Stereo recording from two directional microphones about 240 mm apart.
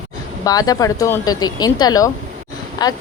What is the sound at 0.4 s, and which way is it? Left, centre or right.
Speech, centre.